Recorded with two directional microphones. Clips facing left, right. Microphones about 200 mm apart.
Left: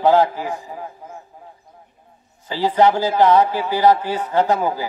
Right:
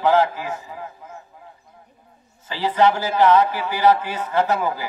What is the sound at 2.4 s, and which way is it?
A man's voice, 15° left (ahead or behind).